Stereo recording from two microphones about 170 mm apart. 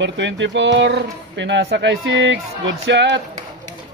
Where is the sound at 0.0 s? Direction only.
90° right.